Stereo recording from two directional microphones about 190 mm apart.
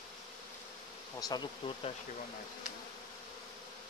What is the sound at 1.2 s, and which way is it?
Bee, 20° left (ahead or behind).